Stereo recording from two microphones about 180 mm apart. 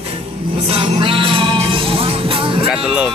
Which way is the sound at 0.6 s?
30° right (ahead or behind).